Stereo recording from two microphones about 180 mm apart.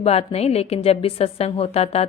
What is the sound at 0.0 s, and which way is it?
A woman's voice, 35° left (ahead or behind).